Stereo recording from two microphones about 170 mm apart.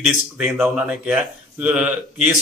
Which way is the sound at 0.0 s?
5° right (ahead or behind).